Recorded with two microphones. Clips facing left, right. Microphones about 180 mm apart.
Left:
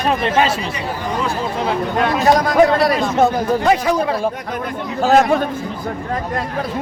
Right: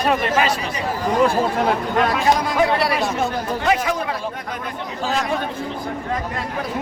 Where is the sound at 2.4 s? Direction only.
45° left (ahead or behind).